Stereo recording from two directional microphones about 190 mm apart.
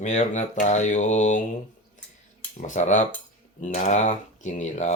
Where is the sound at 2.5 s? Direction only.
40° left (ahead or behind).